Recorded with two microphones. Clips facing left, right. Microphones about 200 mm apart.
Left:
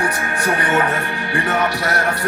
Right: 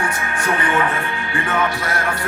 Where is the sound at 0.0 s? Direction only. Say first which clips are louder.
Left 2 dB; 40° left (ahead or behind).